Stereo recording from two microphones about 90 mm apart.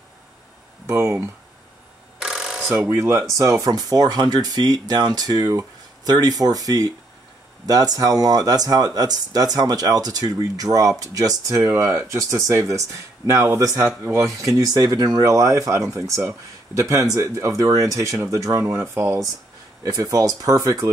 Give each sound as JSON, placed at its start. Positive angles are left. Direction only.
{"t": 0.8, "sound": "speech", "side_deg": -30}
{"t": 2.1, "sound": "mechanisms", "side_deg": -5}
{"t": 2.7, "sound": "speech", "side_deg": -25}
{"t": 19.8, "sound": "speech", "side_deg": -40}